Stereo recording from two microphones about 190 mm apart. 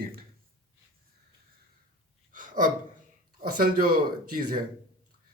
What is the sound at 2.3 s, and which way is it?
Gasp, 45° right (ahead or behind).